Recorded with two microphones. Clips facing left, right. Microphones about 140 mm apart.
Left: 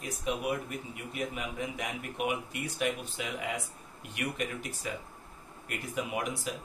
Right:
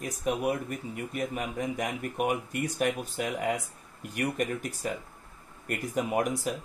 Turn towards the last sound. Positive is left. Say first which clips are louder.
# right 6 dB
turn(degrees=-45)  # may be behind; listen again after turning